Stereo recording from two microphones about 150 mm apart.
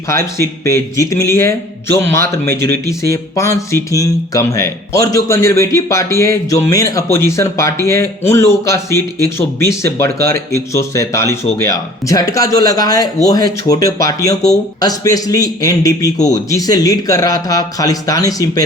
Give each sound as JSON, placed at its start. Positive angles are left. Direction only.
{"t": 0.1, "sound": "speech", "side_deg": 20}